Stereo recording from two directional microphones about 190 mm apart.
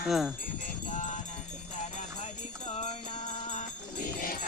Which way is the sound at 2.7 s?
35° left (ahead or behind).